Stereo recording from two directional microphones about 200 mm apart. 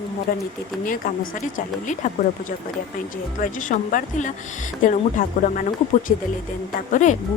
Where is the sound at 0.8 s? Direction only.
45° left (ahead or behind).